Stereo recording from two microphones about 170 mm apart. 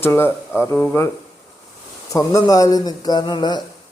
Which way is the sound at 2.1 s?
20° left (ahead or behind).